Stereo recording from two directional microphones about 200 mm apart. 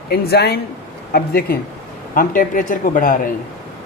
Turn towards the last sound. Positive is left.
turn(degrees=40)  # may be behind; listen again after turning